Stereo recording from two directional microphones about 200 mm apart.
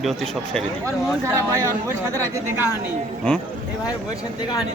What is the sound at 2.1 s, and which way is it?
Speech, 15° right (ahead or behind).